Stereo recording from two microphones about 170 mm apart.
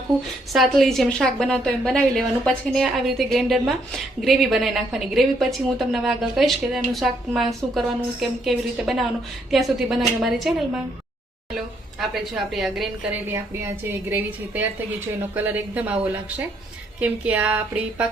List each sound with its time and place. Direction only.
0.5 s a woman's voice: centre (ahead or behind)
11.5 s a woman's voice: centre (ahead or behind)
14.1 s speech: 10° right (ahead or behind)
17.0 s speech: 10° right (ahead or behind)